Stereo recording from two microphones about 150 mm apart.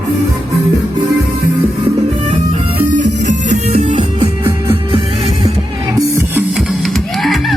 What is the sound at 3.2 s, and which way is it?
Music, 50° right (ahead or behind).